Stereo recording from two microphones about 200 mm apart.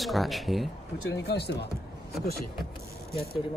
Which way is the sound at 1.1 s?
55° left (ahead or behind).